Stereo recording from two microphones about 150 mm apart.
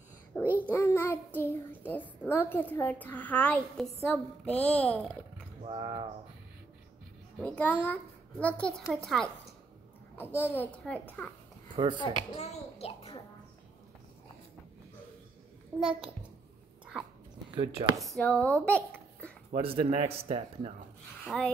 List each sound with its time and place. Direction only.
0.3 s a child's voice: 5° left (ahead or behind)
0.7 s child singing: 15° left (ahead or behind)
1.9 s a child's voice: 15° left (ahead or behind)
5.8 s speech: 30° right (ahead or behind)
7.3 s a child's voice: 10° left (ahead or behind)
10.1 s a woman's voice: 15° left (ahead or behind)
11.7 s speech: 30° right (ahead or behind)
12.4 s a child's voice: 45° left (ahead or behind)
15.7 s a child's voice: 10° right (ahead or behind)
17.9 s speech: centre (ahead or behind)
19.5 s speech: 40° right (ahead or behind)
21.3 s a woman's voice: 5° left (ahead or behind)